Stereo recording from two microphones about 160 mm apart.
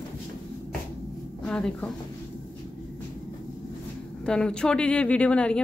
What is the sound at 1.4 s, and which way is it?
Speech, 5° left (ahead or behind).